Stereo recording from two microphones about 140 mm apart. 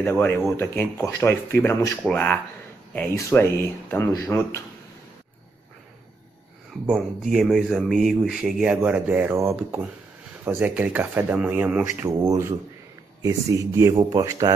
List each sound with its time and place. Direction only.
0.0 s speech: 15° left (ahead or behind)
2.0 s speech: 5° left (ahead or behind)
3.2 s speech: 15° left (ahead or behind)
6.9 s speech: 5° right (ahead or behind); by 14.5 s 25° right (ahead or behind)